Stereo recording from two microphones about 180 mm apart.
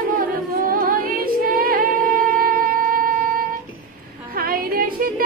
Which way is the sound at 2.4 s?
55° right (ahead or behind).